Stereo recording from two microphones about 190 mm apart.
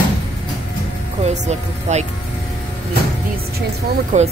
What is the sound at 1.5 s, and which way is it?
Speech, 35° right (ahead or behind).